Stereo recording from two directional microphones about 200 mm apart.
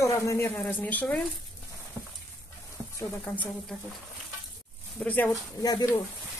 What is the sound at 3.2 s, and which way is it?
Speech, 5° left (ahead or behind).